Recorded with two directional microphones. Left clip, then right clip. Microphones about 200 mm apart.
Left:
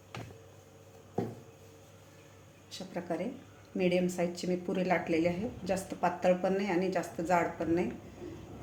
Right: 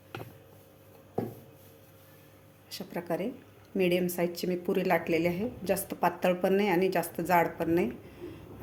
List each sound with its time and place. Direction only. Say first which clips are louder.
2.6 s a woman's voice: right 3 dB; 35° right (ahead or behind)